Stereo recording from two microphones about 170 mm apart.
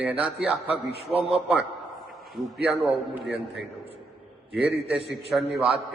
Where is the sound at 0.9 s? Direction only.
35° right (ahead or behind).